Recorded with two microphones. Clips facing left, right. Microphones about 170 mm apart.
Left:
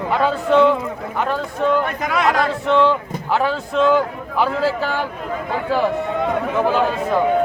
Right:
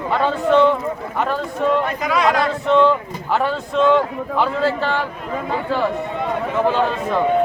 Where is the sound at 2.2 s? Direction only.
Centre (ahead or behind).